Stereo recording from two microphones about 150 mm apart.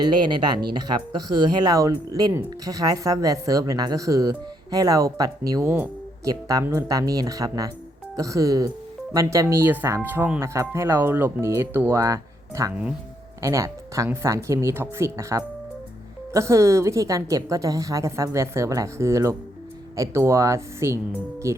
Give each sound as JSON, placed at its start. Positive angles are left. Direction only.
{"t": 0.3, "sound": "speech", "side_deg": -30}